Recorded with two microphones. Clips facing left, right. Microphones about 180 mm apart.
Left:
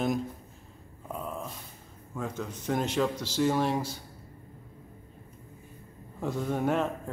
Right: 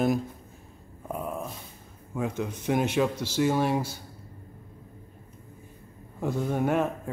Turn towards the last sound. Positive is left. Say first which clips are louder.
# right 2 dB
turn(degrees=-5)  # may be behind; listen again after turning